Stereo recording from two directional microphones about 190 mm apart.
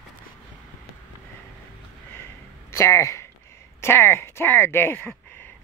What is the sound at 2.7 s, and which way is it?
Speech, 15° left (ahead or behind).